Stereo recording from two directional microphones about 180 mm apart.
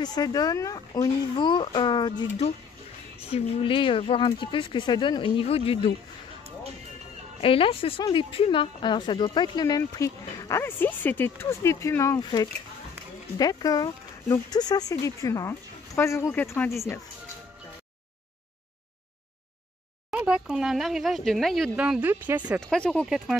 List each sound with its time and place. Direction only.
0.0 s a woman's voice: 20° left (ahead or behind)
7.4 s a woman's voice: 30° left (ahead or behind); by 16.8 s 15° left (ahead or behind)
20.1 s speech: 5° right (ahead or behind)
22.6 s speech: 5° left (ahead or behind)